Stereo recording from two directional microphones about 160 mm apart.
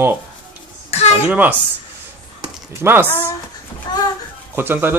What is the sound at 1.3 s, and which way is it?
Speech, 10° right (ahead or behind).